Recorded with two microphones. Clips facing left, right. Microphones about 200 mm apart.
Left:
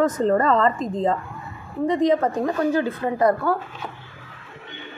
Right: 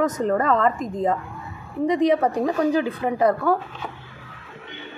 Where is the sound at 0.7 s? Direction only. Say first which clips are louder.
Left 1 dB; 25° left (ahead or behind).